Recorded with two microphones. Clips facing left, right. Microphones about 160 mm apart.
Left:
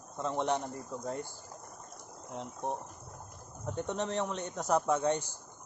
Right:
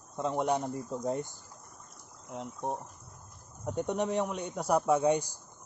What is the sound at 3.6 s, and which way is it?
Speech, 15° right (ahead or behind).